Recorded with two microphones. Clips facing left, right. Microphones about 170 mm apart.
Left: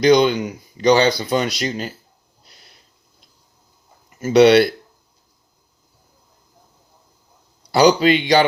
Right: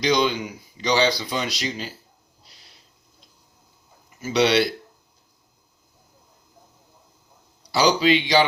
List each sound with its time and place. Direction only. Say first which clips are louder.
0.0 s speech: left 8 dB; 55° left (ahead or behind)
2.4 s a sound: left 3 dB; 55° left (ahead or behind)
4.2 s speech: left 8 dB; 55° left (ahead or behind)
7.7 s speech: left 5 dB; 55° left (ahead or behind)